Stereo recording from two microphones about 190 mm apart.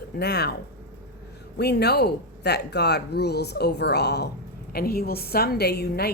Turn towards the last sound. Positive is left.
turn(degrees=60)  # may be behind; listen again after turning